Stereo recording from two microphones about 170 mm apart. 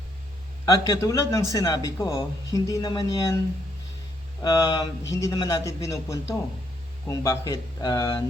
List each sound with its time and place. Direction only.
0.6 s speech: 20° left (ahead or behind)
4.4 s speech: 20° left (ahead or behind)